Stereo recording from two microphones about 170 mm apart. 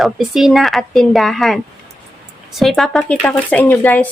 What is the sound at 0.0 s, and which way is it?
Speech, centre (ahead or behind).